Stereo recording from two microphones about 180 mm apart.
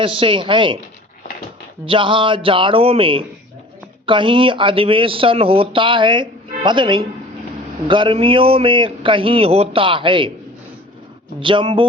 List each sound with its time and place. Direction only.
0.0 s speech: 30° right (ahead or behind)
1.9 s speech: 30° right (ahead or behind)
11.3 s speech: 25° right (ahead or behind)